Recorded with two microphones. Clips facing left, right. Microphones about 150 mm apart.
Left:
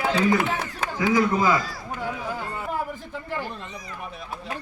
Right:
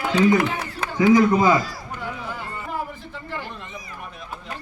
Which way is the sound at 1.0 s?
20° right (ahead or behind).